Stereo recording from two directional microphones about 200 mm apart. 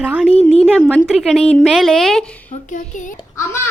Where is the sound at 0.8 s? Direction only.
5° left (ahead or behind).